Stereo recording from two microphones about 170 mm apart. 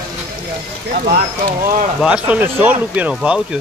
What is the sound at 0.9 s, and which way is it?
Speech, 55° right (ahead or behind).